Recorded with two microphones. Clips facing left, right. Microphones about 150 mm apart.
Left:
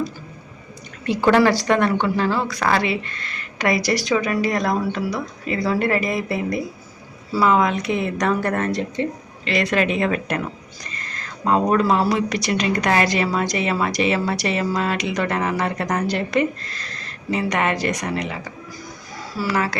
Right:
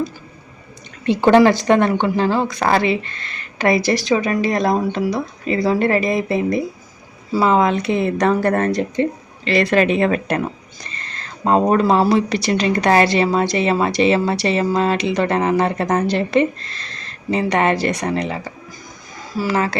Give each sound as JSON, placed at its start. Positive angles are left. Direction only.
{"t": 1.0, "sound": "speech", "side_deg": -25}
{"t": 19.4, "sound": "speech", "side_deg": -25}